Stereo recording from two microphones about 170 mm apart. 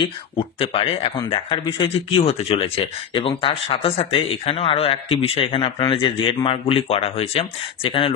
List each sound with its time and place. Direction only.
0.6 s speech: 30° left (ahead or behind)